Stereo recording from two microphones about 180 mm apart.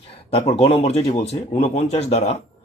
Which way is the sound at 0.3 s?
35° left (ahead or behind).